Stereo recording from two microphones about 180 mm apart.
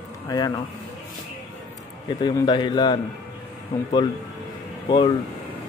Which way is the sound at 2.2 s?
25° left (ahead or behind).